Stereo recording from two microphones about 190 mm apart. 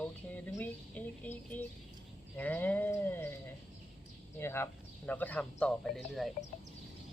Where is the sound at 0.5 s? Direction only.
10° left (ahead or behind).